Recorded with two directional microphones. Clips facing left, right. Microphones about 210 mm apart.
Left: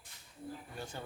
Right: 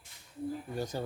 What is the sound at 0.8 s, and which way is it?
Speech, 40° right (ahead or behind).